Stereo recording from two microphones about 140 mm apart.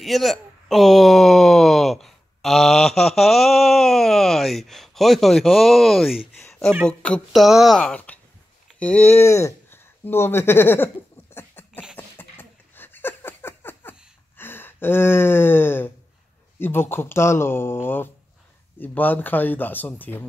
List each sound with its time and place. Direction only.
0.0 s speech: centre (ahead or behind)
11.3 s a sound: 15° left (ahead or behind)
16.5 s speech: 15° left (ahead or behind)